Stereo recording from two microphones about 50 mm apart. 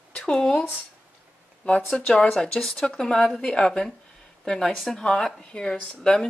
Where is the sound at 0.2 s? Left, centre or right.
Centre.